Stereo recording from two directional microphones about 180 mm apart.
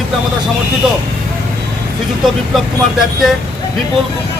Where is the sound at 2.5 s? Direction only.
Centre (ahead or behind).